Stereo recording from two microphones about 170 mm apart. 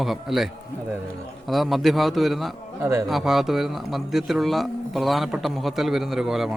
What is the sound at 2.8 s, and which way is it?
Speech, 15° right (ahead or behind).